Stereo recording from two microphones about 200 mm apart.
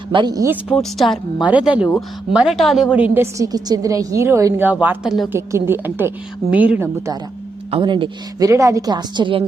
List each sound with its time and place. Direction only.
0.1 s a woman's voice: 20° right (ahead or behind)
0.8 s a woman's voice: centre (ahead or behind)
5.3 s a woman's voice: 10° right (ahead or behind)
7.7 s a woman's voice: 25° right (ahead or behind)